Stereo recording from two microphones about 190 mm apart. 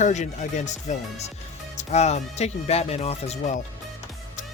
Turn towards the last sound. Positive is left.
turn(degrees=35)  # may be behind; listen again after turning